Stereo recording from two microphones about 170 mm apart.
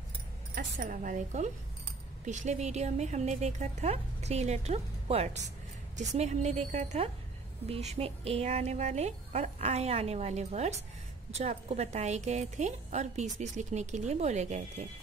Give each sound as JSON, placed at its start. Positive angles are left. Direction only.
{"t": 0.6, "sound": "a woman's voice", "side_deg": -50}